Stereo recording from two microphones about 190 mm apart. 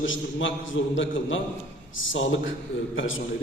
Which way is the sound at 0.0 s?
90° left.